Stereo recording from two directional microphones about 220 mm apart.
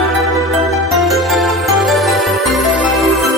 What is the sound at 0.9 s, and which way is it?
Music, centre (ahead or behind).